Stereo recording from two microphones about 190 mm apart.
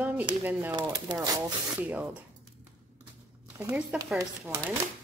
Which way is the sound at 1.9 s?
10° right (ahead or behind).